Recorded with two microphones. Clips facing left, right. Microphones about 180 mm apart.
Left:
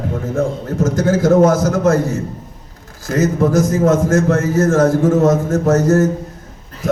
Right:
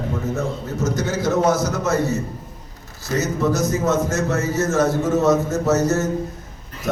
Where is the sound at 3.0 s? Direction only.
50° left (ahead or behind).